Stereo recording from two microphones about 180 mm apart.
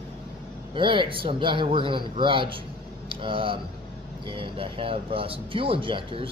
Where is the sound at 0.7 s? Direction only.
30° right (ahead or behind).